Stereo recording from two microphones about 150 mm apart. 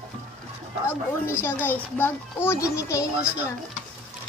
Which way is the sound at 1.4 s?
15° left (ahead or behind).